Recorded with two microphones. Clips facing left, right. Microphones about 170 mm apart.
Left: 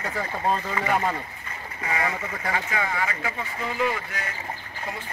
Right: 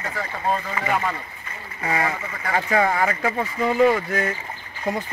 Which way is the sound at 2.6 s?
50° right (ahead or behind).